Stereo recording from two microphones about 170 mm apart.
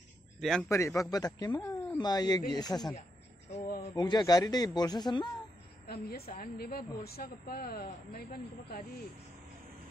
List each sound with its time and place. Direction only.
0.4 s a man's voice: 5° left (ahead or behind)
0.7 s speech: 15° left (ahead or behind)
5.9 s a woman's voice: 65° left (ahead or behind)